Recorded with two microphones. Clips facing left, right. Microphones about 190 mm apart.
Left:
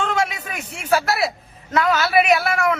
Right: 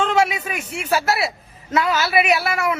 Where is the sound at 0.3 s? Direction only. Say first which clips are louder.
Right 5 dB; 10° right (ahead or behind).